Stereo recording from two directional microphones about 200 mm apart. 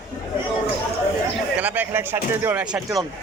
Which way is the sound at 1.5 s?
10° right (ahead or behind).